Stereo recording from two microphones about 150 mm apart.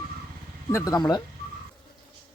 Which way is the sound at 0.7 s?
20° left (ahead or behind).